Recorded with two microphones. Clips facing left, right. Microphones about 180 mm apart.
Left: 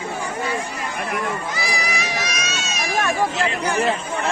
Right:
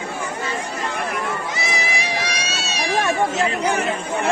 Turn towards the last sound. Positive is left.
turn(degrees=-35)  # may be behind; listen again after turning